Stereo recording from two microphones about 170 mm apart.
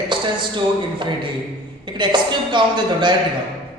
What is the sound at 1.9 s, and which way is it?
A man's voice, 25° right (ahead or behind).